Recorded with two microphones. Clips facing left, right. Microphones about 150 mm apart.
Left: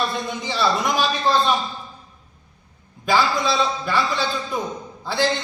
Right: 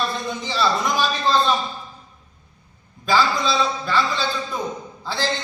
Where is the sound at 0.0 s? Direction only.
Centre (ahead or behind).